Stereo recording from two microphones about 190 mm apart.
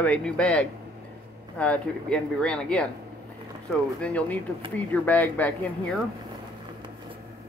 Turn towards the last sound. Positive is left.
turn(degrees=5)  # may be behind; listen again after turning